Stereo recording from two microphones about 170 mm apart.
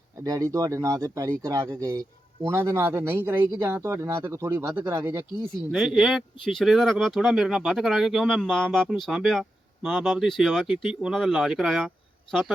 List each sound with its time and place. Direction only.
0.3 s speech: 20° right (ahead or behind)
5.7 s speech: 5° right (ahead or behind)